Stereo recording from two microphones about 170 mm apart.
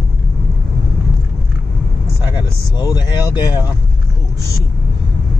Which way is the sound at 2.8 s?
20° left (ahead or behind).